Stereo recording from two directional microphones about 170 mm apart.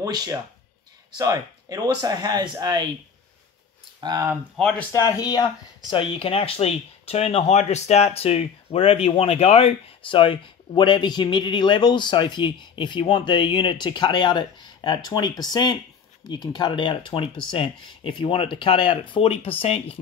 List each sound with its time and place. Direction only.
0.0 s speech: 20° right (ahead or behind)
4.0 s speech: 20° right (ahead or behind)
4.6 s speech: 5° left (ahead or behind)
4.9 s speech: 20° left (ahead or behind)